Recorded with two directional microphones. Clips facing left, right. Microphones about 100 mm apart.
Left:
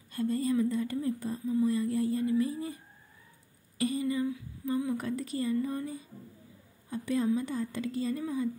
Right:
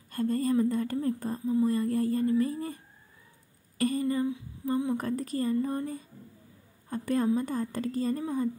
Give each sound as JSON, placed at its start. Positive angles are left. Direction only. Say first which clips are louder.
{"t": 0.1, "sound": "a woman's voice", "louder": "right 2 dB", "side_deg": -50}
{"t": 4.6, "sound": "a woman's voice", "louder": "right 2 dB", "side_deg": -35}
{"t": 5.0, "sound": "a woman's voice", "louder": "right 2 dB", "side_deg": -45}